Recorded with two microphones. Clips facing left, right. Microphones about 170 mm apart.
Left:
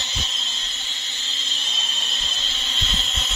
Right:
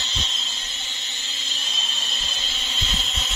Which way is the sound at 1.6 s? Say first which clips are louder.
Even; centre (ahead or behind).